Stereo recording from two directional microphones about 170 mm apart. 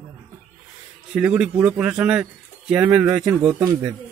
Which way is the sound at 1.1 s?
5° right (ahead or behind).